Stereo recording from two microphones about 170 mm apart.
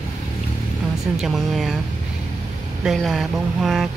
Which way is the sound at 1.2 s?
Centre (ahead or behind).